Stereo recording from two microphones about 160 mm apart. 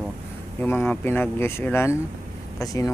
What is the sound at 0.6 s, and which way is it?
Speech, 10° left (ahead or behind).